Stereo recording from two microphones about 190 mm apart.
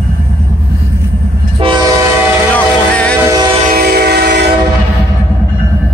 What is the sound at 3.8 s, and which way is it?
Train, 55° right (ahead or behind).